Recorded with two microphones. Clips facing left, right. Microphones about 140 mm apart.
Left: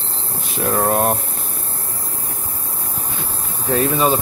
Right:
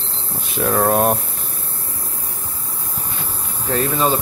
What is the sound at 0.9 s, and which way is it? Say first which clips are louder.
Speech: right 1 dB; 15° right (ahead or behind).